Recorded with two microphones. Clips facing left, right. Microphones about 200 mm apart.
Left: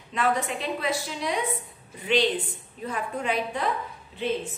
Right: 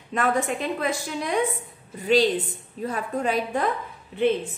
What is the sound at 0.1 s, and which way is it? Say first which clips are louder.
A woman's voice: right 2 dB; 45° right (ahead or behind).